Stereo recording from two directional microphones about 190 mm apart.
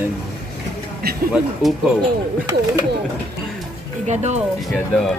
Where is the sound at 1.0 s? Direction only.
55° right (ahead or behind).